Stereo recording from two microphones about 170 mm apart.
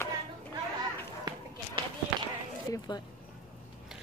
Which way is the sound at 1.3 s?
20° right (ahead or behind).